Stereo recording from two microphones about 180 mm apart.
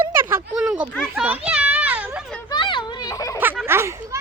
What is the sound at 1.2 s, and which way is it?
Children playing, 5° right (ahead or behind).